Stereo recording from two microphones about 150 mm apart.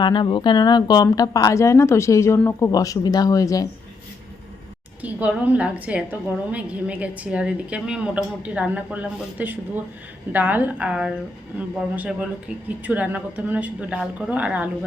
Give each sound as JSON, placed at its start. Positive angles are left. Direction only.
{"t": 0.0, "sound": "speech", "side_deg": 30}
{"t": 5.0, "sound": "a woman's voice", "side_deg": -10}